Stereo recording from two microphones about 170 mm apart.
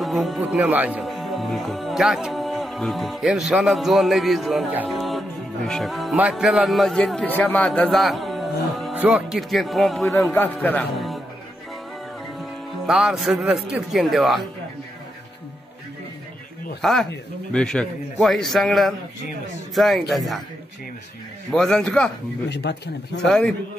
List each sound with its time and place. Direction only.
0.0 s speech: centre (ahead or behind)
4.6 s music: 10° right (ahead or behind)
4.9 s music: centre (ahead or behind)
8.9 s speech: 5° right (ahead or behind)
10.1 s a man's voice: 15° left (ahead or behind)
12.4 s speech: 5° right (ahead or behind)
16.8 s speech: centre (ahead or behind)
21.5 s speech: 5° left (ahead or behind)
22.5 s speech: 85° left
23.2 s speech: 5° left (ahead or behind)